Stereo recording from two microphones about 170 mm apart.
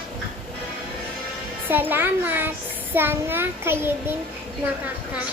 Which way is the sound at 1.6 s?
10° right (ahead or behind).